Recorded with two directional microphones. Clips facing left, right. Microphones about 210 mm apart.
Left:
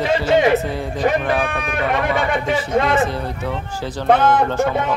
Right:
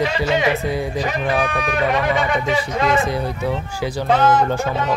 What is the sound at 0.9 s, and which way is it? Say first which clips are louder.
A man's voice: left 2 dB; 55° left (ahead or behind).